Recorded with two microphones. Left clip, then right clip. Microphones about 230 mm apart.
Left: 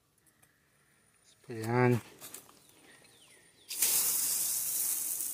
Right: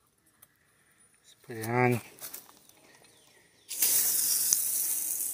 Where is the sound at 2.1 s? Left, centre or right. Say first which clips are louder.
Right 3 dB; right.